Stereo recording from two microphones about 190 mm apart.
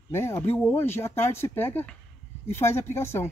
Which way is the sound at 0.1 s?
15° left (ahead or behind).